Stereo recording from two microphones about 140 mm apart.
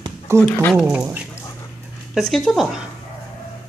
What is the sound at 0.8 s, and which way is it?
Speech, 10° right (ahead or behind).